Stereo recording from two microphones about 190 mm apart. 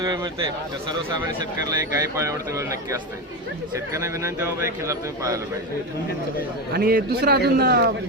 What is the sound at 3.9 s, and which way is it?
Speech, 15° right (ahead or behind).